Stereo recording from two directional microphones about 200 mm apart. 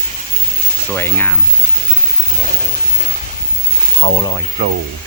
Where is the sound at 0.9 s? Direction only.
10° left (ahead or behind).